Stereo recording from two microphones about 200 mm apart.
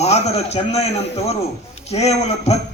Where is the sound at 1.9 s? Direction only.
30° left (ahead or behind).